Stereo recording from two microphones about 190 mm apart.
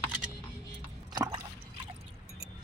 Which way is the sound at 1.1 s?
25° right (ahead or behind).